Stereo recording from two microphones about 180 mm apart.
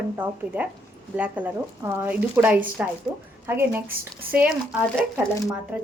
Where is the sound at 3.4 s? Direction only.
10° right (ahead or behind).